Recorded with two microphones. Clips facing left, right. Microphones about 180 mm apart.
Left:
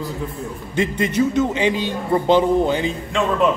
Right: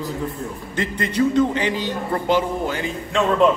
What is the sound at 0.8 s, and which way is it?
A man's voice, 10° left (ahead or behind).